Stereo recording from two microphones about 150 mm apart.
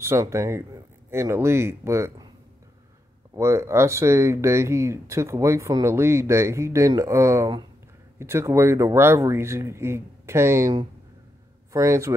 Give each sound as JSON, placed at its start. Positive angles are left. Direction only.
{"t": 0.0, "sound": "speech", "side_deg": -20}
{"t": 3.3, "sound": "speech", "side_deg": -20}